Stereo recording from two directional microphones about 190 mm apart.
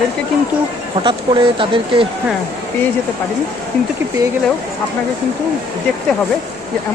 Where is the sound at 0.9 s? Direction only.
25° right (ahead or behind).